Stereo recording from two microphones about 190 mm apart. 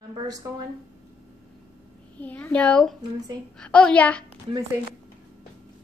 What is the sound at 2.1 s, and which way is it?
A child's voice, 10° left (ahead or behind).